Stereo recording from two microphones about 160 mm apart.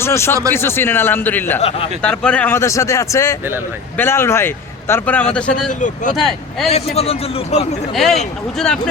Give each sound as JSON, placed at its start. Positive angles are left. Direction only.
{"t": 0.0, "sound": "speech", "side_deg": 15}
{"t": 1.5, "sound": "a man's voice", "side_deg": 40}
{"t": 2.0, "sound": "speech", "side_deg": 5}
{"t": 5.8, "sound": "speech", "side_deg": 50}
{"t": 6.1, "sound": "speech", "side_deg": 0}
{"t": 6.7, "sound": "a man's voice", "side_deg": 40}
{"t": 7.9, "sound": "speech", "side_deg": 0}